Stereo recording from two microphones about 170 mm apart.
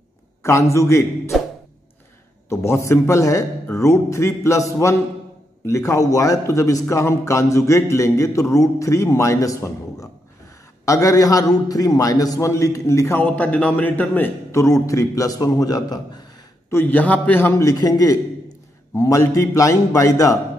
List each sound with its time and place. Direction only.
0.4 s a man's voice: 15° left (ahead or behind)
2.5 s a man's voice: 15° left (ahead or behind)
16.7 s a man's voice: 10° left (ahead or behind)